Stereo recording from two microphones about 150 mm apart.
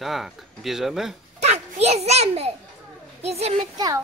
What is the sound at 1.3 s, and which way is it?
A child's voice, 45° right (ahead or behind).